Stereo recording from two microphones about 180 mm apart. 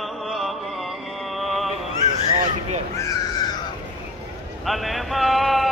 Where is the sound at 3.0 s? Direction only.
20° left (ahead or behind).